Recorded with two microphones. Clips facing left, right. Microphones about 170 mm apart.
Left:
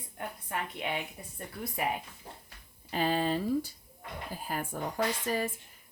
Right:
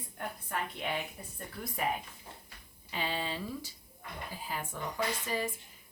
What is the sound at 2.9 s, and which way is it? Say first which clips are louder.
Speech: left 7 dB; 45° left (ahead or behind).